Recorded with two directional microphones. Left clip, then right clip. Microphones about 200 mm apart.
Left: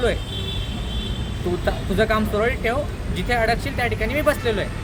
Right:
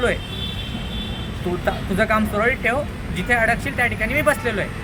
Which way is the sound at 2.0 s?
20° left (ahead or behind).